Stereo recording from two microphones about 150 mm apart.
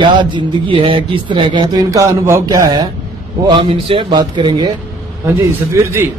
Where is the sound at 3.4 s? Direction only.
35° right (ahead or behind).